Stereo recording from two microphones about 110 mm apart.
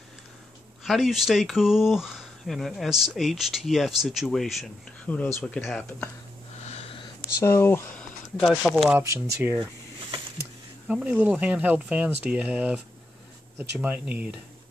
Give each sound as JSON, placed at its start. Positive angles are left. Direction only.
{"t": 0.8, "sound": "speech", "side_deg": 0}
{"t": 5.0, "sound": "speech", "side_deg": 15}
{"t": 5.6, "sound": "speech", "side_deg": 0}
{"t": 6.6, "sound": "a sound", "side_deg": 70}
{"t": 7.3, "sound": "speech", "side_deg": 25}
{"t": 7.9, "sound": "a sound", "side_deg": 10}
{"t": 8.6, "sound": "speech", "side_deg": 0}
{"t": 8.9, "sound": "speech", "side_deg": -20}
{"t": 10.9, "sound": "speech", "side_deg": -10}